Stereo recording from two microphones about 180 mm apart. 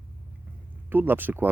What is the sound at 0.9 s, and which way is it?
Speech, 10° right (ahead or behind).